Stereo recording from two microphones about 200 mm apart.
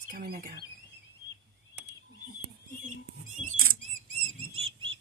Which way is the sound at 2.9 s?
40° right (ahead or behind).